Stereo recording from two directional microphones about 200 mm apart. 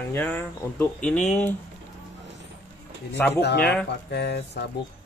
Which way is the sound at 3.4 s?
55° left (ahead or behind).